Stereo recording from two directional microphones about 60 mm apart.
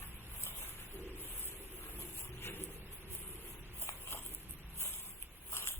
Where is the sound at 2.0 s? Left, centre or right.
Left.